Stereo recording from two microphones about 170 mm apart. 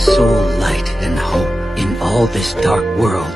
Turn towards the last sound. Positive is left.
turn(degrees=0)  # may be behind; listen again after turning